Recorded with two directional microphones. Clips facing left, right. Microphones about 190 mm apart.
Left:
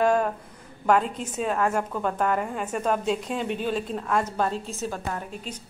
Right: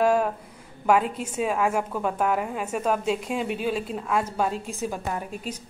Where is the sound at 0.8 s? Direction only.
5° right (ahead or behind).